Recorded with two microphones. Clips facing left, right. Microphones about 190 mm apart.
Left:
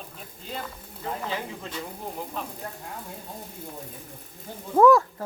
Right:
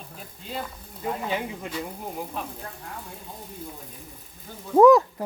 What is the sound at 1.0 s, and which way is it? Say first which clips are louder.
Speech: right 3 dB; 15° right (ahead or behind).